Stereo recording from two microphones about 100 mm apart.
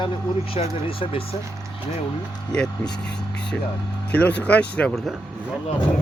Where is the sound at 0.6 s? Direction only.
90° left.